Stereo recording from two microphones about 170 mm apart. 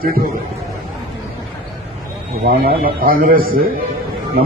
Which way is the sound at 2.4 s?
60° right (ahead or behind).